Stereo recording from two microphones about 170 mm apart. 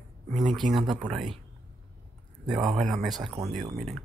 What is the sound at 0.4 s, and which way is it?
Speech, 25° right (ahead or behind).